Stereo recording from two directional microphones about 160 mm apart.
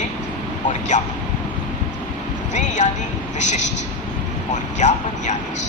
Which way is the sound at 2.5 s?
50° left (ahead or behind).